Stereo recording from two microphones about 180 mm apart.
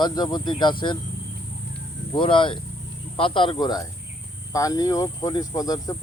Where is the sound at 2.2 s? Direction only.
30° left (ahead or behind).